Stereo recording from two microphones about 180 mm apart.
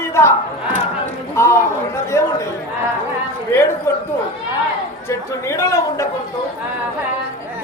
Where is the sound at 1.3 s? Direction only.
15° left (ahead or behind).